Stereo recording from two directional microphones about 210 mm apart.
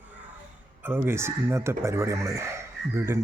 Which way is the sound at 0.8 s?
10° right (ahead or behind).